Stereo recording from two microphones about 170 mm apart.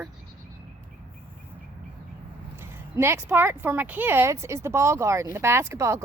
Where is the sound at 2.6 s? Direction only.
15° right (ahead or behind).